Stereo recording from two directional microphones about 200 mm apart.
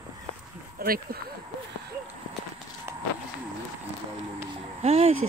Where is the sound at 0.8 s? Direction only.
50° right (ahead or behind).